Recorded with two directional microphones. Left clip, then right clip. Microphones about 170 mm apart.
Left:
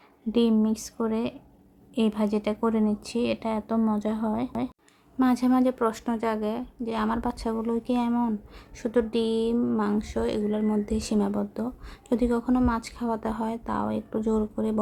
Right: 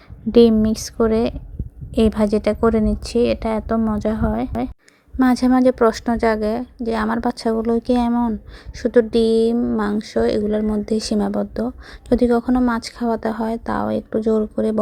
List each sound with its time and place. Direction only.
0.3 s speech: 40° right (ahead or behind)